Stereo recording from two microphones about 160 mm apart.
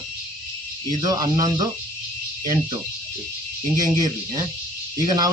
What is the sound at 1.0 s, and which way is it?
Speech, 25° right (ahead or behind).